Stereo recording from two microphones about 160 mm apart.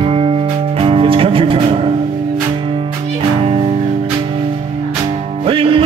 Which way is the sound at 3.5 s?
30° right (ahead or behind).